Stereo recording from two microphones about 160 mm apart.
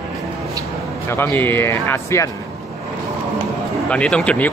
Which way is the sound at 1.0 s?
15° left (ahead or behind).